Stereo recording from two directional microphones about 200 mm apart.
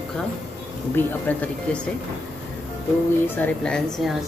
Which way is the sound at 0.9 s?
10° left (ahead or behind).